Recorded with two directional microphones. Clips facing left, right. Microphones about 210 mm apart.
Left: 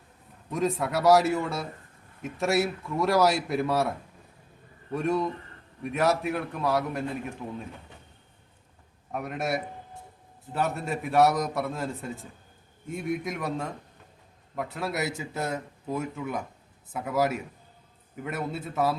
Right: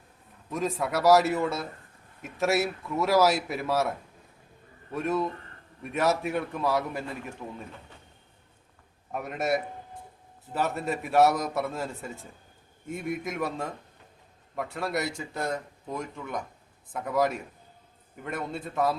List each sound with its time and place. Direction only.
0.5 s a man's voice: centre (ahead or behind)
4.9 s a man's voice: centre (ahead or behind)
9.1 s a man's voice: centre (ahead or behind)